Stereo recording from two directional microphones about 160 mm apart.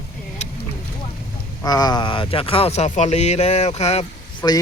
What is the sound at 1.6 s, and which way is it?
Speech, 25° left (ahead or behind).